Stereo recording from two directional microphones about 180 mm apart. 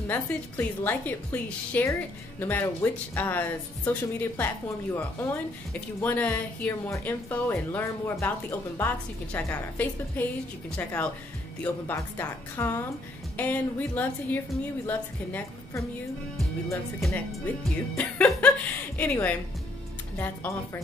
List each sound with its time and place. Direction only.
0.1 s speech: 10° left (ahead or behind)
17.0 s speech: centre (ahead or behind)